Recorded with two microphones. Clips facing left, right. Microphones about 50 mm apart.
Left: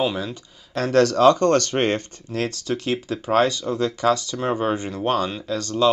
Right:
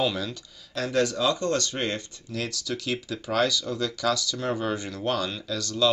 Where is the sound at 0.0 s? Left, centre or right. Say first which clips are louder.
Left 3 dB; left.